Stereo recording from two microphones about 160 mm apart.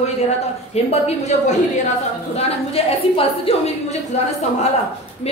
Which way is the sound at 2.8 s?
40° left (ahead or behind).